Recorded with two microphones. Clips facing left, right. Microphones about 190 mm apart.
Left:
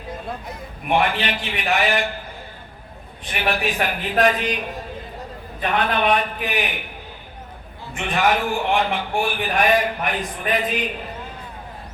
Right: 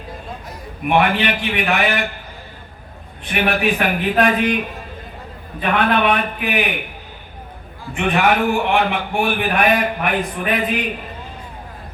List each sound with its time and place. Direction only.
0.9 s a man's voice: 60° right (ahead or behind)
3.3 s a man's voice: 60° right (ahead or behind)
5.6 s a man's voice: 60° right (ahead or behind)
7.9 s a man's voice: 60° right (ahead or behind)